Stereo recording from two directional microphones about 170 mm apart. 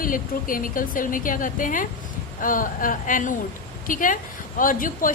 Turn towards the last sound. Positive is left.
turn(degrees=55)  # may be behind; listen again after turning